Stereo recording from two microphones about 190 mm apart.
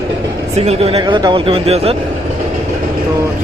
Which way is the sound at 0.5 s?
35° right (ahead or behind).